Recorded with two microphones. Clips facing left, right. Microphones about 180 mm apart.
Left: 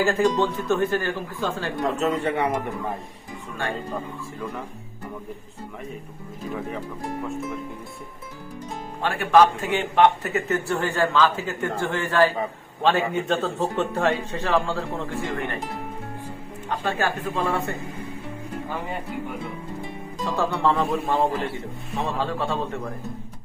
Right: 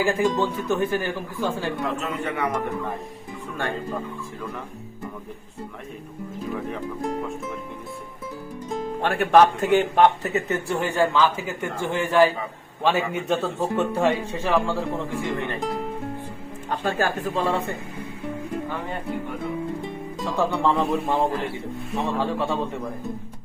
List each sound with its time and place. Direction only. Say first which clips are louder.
0.0 s speech: left 1 dB; 10° right (ahead or behind)
1.8 s speech: left 4 dB; 40° left (ahead or behind)
9.0 s speech: right 1 dB; 55° right (ahead or behind)
9.7 s speech: right 2 dB; 40° right (ahead or behind)
10.2 s speech: even; 20° right (ahead or behind)
17.2 s a man's voice: right 1 dB; 25° right (ahead or behind)
20.2 s speech: even; 15° right (ahead or behind)
22.2 s speech: right 1 dB; 15° right (ahead or behind)